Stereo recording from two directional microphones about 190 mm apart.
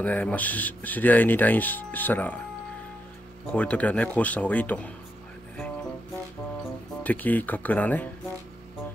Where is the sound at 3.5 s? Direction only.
5° left (ahead or behind).